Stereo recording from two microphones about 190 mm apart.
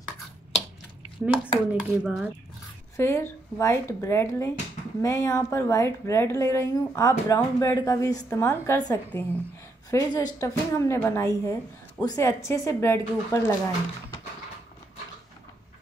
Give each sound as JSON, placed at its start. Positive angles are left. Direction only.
{"t": 1.0, "sound": "a sound", "side_deg": -10}
{"t": 1.8, "sound": "a child's voice", "side_deg": -5}
{"t": 3.0, "sound": "a woman's voice", "side_deg": 15}